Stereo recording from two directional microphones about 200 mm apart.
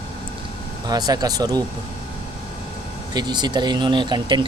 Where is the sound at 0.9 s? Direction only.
20° right (ahead or behind).